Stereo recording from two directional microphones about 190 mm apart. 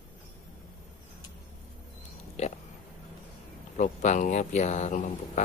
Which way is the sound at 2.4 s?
35° left (ahead or behind).